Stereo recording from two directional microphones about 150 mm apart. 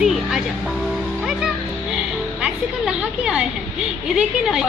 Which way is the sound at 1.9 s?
5° right (ahead or behind).